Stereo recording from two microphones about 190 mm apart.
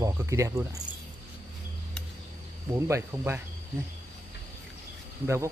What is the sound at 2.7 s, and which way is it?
Speech, 15° right (ahead or behind).